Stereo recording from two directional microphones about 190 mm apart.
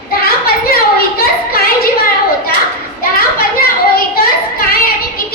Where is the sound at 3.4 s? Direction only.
50° left (ahead or behind).